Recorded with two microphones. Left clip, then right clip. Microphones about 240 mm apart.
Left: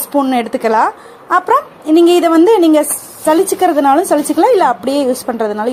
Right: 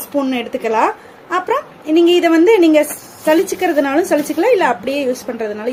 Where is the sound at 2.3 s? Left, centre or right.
Centre.